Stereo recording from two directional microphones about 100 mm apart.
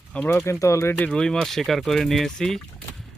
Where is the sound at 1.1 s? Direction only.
5° left (ahead or behind).